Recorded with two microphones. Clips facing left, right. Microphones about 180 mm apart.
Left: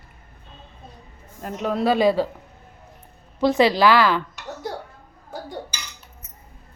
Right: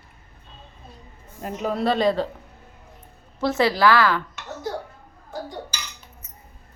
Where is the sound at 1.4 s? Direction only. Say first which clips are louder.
Left 1 dB; 5° right (ahead or behind).